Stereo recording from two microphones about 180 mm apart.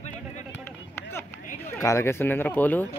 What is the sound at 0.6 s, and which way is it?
Chop, 15° left (ahead or behind).